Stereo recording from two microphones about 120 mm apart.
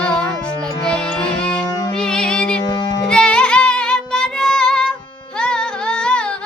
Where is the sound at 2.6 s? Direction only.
35° left (ahead or behind).